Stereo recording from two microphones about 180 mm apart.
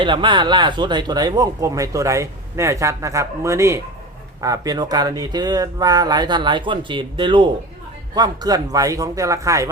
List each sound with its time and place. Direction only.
0.0 s speech: 25° right (ahead or behind)